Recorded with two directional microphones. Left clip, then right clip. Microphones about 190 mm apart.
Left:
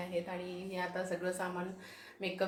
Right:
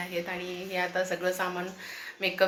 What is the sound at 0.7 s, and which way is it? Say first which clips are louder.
A woman's voice: right 9 dB; 15° right (ahead or behind).